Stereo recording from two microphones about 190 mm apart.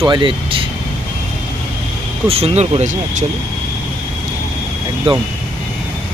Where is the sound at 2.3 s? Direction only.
30° right (ahead or behind).